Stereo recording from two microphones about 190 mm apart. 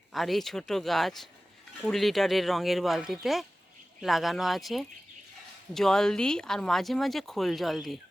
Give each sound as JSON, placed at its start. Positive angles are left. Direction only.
{"t": 0.1, "sound": "speech", "side_deg": 0}